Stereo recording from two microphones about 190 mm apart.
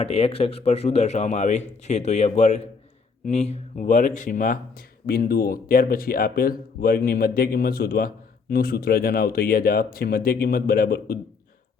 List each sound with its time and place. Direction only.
0.0 s speech: 30° left (ahead or behind); by 11.2 s 50° left (ahead or behind)